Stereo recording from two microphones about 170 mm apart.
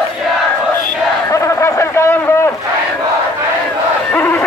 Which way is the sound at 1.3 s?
15° left (ahead or behind).